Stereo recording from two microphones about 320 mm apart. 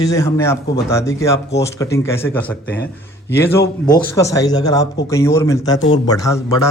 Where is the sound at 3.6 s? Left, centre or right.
Left.